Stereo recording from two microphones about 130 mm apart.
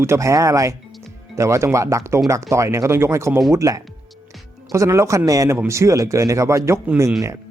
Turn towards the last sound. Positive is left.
turn(degrees=-25)  # may be behind; listen again after turning